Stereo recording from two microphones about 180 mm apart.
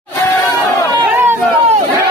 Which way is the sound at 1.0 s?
10° right (ahead or behind).